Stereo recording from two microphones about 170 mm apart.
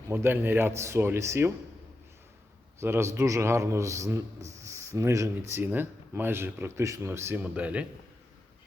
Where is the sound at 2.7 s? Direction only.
15° right (ahead or behind).